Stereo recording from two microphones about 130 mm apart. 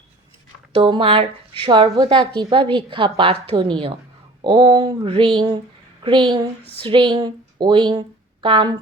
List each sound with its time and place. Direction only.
0.7 s a woman's voice: 40° right (ahead or behind)